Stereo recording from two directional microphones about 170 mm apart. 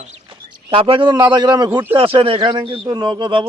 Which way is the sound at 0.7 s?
30° right (ahead or behind).